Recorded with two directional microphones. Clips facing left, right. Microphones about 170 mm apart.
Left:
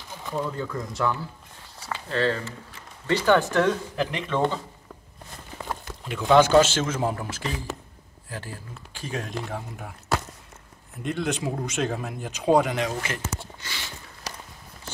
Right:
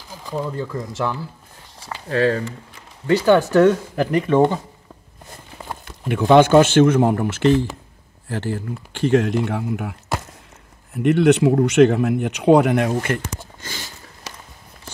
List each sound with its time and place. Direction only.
0.2 s a sound: centre (ahead or behind)
2.0 s speech: 50° right (ahead or behind)
3.1 s speech: 10° right (ahead or behind)
3.9 s speech: 45° right (ahead or behind)
4.3 s speech: 15° right (ahead or behind)
6.0 s a man's voice: 60° right (ahead or behind)
11.0 s speech: 70° right (ahead or behind)
13.6 s a sound: 45° right (ahead or behind)